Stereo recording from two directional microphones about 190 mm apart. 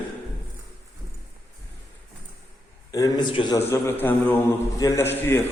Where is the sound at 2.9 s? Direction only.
20° left (ahead or behind).